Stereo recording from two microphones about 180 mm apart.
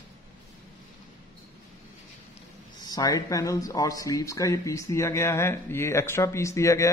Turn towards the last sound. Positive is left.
turn(degrees=15)  # may be behind; listen again after turning